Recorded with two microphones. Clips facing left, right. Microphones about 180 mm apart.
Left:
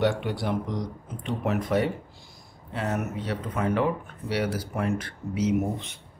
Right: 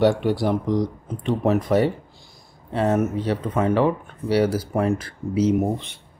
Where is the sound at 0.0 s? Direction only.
35° right (ahead or behind).